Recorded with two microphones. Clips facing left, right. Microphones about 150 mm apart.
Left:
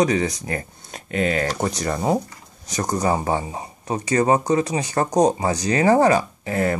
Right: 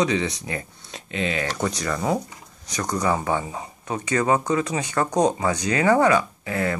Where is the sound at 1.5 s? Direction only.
35° left (ahead or behind).